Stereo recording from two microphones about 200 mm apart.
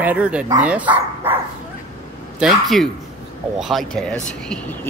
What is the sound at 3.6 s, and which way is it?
Speech, centre (ahead or behind).